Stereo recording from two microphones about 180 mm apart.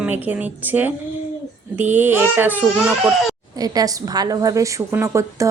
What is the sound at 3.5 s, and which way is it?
A woman's voice, 20° right (ahead or behind).